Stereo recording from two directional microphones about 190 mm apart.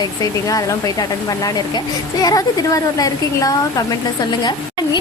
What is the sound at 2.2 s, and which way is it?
A woman's voice, 20° left (ahead or behind).